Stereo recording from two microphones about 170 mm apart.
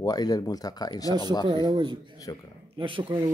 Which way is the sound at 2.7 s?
30° right (ahead or behind).